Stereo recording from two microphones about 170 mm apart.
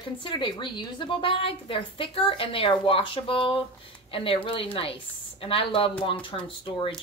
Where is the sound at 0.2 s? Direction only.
30° left (ahead or behind).